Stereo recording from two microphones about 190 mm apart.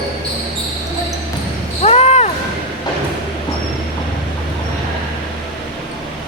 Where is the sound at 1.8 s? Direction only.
35° left (ahead or behind).